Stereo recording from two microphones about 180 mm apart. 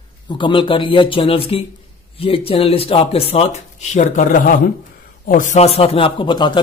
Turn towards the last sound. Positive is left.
turn(degrees=25)  # may be behind; listen again after turning